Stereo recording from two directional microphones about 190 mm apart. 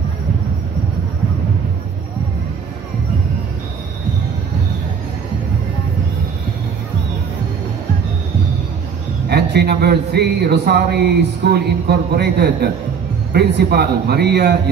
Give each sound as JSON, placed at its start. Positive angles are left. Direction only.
{"t": 9.3, "sound": "speech", "side_deg": -60}